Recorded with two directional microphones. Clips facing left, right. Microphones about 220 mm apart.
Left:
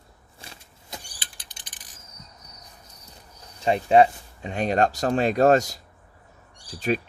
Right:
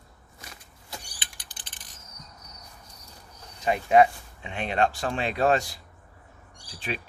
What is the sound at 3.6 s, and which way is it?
Speech, 30° left (ahead or behind).